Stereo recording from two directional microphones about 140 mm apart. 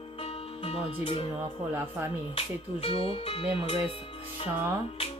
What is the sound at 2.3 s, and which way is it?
Speech, 45° left (ahead or behind).